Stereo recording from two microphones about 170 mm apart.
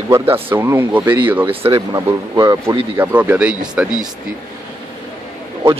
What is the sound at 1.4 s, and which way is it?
Speech, 30° right (ahead or behind).